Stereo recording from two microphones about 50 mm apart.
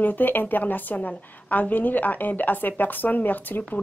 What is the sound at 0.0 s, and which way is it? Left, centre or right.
A woman's voice, left.